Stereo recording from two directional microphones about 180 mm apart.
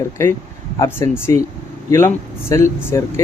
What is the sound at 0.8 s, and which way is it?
Speech, 15° left (ahead or behind).